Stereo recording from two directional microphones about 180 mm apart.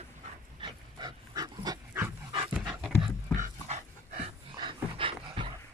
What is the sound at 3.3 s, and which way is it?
Dog, 40° right (ahead or behind).